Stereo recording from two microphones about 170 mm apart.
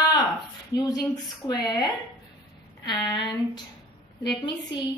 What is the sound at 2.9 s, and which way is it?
Speech, 20° left (ahead or behind).